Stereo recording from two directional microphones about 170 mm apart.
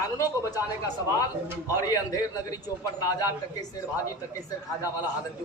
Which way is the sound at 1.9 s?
20° left (ahead or behind).